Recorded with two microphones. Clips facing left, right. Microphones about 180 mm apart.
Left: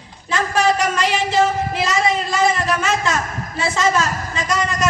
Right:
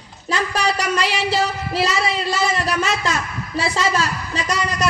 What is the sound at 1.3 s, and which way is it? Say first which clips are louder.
Speech: left 4 dB; 35° right (ahead or behind).